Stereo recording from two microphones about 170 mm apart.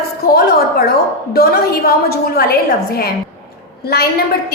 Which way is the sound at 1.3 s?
65° left (ahead or behind).